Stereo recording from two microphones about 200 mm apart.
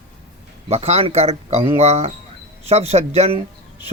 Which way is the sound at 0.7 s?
30° right (ahead or behind).